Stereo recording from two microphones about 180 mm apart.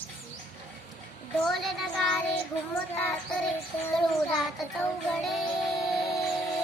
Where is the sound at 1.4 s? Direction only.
Centre (ahead or behind).